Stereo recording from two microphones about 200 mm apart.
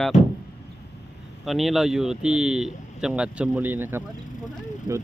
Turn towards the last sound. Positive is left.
turn(degrees=40)  # may be behind; listen again after turning